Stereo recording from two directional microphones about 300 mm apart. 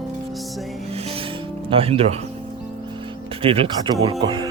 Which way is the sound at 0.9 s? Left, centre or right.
Centre.